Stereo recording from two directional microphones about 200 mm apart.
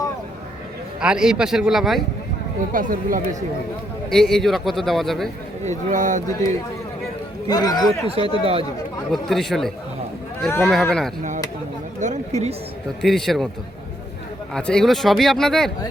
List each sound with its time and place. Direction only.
1.0 s a man's voice: 5° right (ahead or behind)
2.7 s speech: 45° right (ahead or behind)
4.1 s a man's voice: centre (ahead or behind)
5.6 s speech: 40° right (ahead or behind)
6.2 s a man's voice: 15° left (ahead or behind)
8.0 s speech: 30° right (ahead or behind)
9.1 s a man's voice: centre (ahead or behind)
11.9 s speech: 35° right (ahead or behind)
13.0 s a man's voice: centre (ahead or behind)
14.5 s a man's voice: 5° left (ahead or behind)